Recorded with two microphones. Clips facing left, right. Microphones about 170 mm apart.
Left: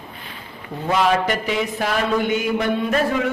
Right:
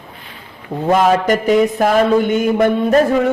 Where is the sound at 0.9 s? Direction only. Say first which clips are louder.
Right 6 dB; 45° right (ahead or behind).